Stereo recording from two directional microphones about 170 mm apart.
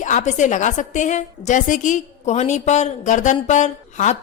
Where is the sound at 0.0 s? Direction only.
45° left (ahead or behind).